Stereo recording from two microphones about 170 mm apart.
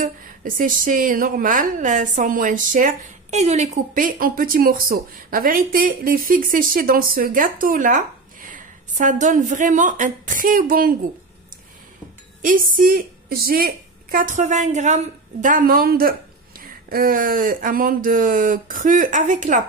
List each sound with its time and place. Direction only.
0.0 s a woman's voice: 50° right (ahead or behind)
12.4 s a woman's voice: 50° right (ahead or behind)